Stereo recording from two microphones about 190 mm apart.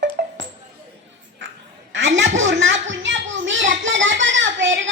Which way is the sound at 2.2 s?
80° right.